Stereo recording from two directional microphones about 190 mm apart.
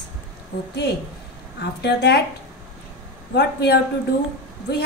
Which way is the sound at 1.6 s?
60° left (ahead or behind).